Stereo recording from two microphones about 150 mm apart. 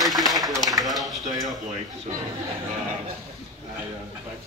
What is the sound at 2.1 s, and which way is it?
Speech, 50° right (ahead or behind).